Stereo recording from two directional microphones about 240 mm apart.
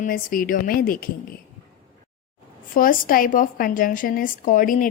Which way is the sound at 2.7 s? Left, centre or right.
Left.